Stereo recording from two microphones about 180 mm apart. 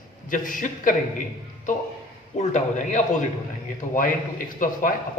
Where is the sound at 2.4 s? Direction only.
40° left (ahead or behind).